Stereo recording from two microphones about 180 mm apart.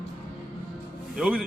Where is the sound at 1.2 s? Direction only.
5° right (ahead or behind).